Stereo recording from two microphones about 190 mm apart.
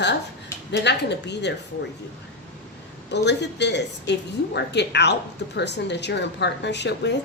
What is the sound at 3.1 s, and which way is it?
Speech, 65° left (ahead or behind).